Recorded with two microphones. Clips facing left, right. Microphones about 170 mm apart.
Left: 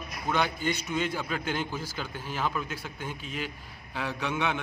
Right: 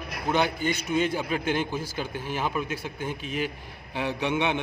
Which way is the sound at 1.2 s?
20° right (ahead or behind).